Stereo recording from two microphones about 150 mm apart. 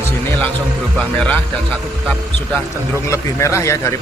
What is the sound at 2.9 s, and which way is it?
Speech, 20° left (ahead or behind).